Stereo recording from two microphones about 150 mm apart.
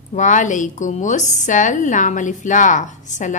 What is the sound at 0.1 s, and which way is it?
A woman's voice, 55° left (ahead or behind).